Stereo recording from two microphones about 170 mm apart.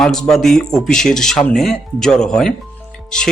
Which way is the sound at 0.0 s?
5° left (ahead or behind).